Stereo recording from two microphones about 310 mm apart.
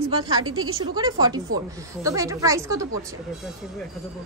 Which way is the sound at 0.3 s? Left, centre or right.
Right.